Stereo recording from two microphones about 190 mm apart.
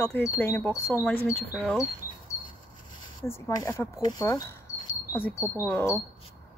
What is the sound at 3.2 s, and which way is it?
Speech, 15° left (ahead or behind).